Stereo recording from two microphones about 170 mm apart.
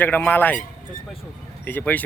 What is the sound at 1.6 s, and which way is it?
Speech, 10° left (ahead or behind).